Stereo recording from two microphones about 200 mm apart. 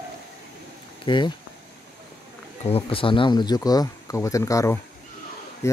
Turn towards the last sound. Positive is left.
turn(degrees=15)  # may be behind; listen again after turning